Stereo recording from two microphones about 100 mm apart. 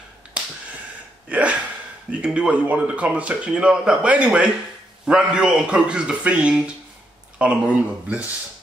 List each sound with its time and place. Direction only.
1.3 s speech: 10° right (ahead or behind)